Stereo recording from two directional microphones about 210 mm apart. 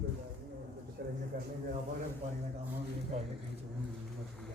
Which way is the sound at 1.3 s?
40° right (ahead or behind).